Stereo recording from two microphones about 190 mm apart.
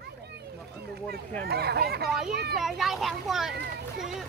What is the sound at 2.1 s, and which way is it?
A child's voice, centre (ahead or behind).